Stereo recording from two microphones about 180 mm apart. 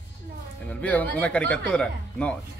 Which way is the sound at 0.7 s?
5° left (ahead or behind).